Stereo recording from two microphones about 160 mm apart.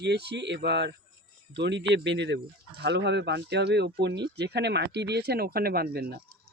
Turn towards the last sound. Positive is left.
turn(degrees=-80)